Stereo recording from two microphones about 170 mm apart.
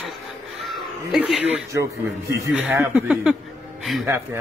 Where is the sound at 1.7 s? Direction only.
15° right (ahead or behind).